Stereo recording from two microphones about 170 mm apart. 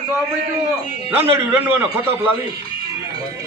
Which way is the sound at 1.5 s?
10° right (ahead or behind).